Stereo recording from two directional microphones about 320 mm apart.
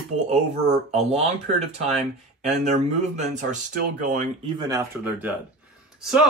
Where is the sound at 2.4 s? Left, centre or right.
Right.